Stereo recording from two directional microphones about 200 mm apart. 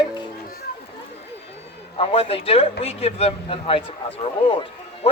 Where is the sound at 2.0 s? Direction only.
30° left (ahead or behind).